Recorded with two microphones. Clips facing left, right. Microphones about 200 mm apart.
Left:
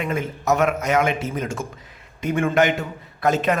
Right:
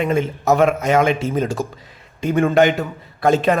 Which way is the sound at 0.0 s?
30° right (ahead or behind).